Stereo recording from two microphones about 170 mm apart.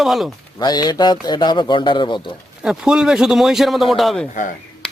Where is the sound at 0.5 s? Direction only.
25° left (ahead or behind).